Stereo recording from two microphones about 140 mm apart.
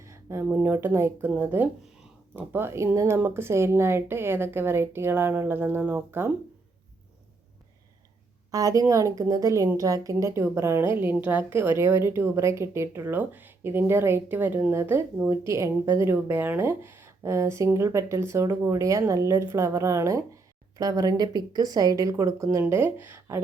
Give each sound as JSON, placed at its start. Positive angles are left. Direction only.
{"t": 0.4, "sound": "a woman's voice", "side_deg": -15}
{"t": 8.5, "sound": "a woman's voice", "side_deg": -25}